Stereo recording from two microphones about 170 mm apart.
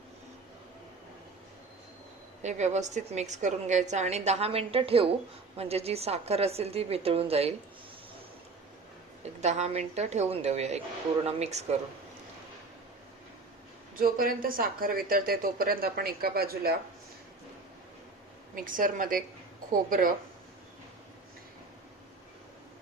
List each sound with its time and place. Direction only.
2.4 s a woman's voice: 45° right (ahead or behind)
9.4 s a woman's voice: 40° right (ahead or behind)
13.9 s speech: 60° right (ahead or behind)
18.5 s a woman's voice: 55° right (ahead or behind)